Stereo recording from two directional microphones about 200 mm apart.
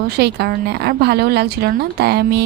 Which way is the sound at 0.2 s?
55° right (ahead or behind).